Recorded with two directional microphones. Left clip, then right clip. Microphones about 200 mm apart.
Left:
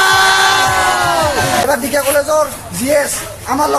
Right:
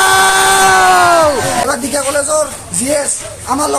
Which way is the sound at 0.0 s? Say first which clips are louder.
Right 1 dB; 30° right (ahead or behind).